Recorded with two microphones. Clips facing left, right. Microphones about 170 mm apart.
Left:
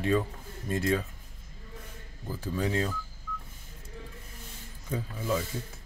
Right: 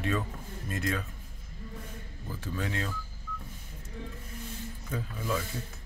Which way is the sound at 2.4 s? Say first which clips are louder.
Left 5 dB; 35° left (ahead or behind).